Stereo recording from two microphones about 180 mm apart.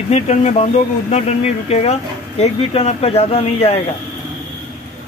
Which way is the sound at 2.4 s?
35° left (ahead or behind).